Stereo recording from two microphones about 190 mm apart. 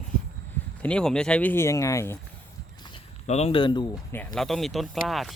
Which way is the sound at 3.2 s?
35° left (ahead or behind).